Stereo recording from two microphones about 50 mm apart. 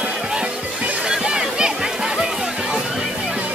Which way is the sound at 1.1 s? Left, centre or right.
Centre.